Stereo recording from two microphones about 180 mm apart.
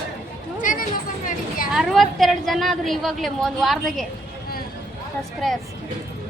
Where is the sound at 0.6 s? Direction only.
50° left (ahead or behind).